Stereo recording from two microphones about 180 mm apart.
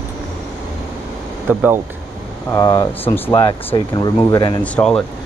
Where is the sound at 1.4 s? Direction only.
10° right (ahead or behind).